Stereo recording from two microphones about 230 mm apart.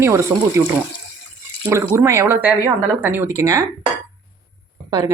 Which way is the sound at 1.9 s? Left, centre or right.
Centre.